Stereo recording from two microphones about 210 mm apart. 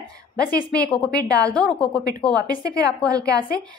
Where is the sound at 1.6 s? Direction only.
5° left (ahead or behind).